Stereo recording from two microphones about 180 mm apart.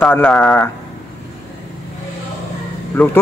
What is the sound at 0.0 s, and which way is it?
Speech, 5° left (ahead or behind).